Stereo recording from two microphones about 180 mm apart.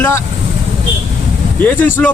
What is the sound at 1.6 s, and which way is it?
Speech, 10° left (ahead or behind).